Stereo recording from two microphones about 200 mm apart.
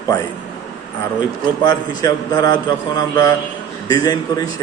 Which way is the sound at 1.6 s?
20° left (ahead or behind).